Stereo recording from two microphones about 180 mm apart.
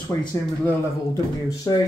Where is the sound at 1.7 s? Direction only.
20° left (ahead or behind).